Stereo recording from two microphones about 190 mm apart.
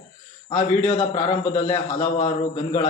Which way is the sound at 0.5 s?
35° left (ahead or behind).